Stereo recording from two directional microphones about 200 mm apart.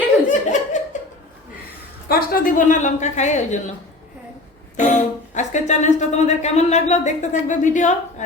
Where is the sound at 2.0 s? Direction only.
50° left (ahead or behind).